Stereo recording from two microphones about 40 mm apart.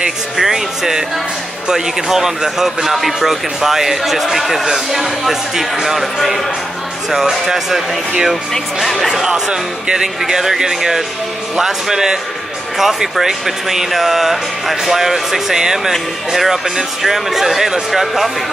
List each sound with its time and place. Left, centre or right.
0.4 s speech: centre
7.1 s speech: centre
8.8 s speech: centre
9.1 s speech: centre